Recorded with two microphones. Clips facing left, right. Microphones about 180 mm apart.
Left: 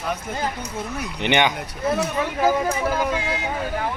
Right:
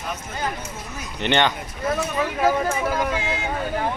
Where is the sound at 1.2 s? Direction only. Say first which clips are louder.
Even; 15° left (ahead or behind).